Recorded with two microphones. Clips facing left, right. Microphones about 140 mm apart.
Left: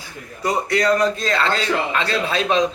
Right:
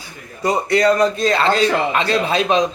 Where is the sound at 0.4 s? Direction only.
25° right (ahead or behind).